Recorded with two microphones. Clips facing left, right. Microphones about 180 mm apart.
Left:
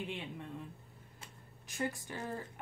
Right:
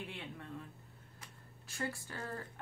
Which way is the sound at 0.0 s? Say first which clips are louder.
Left 4 dB; 20° left (ahead or behind).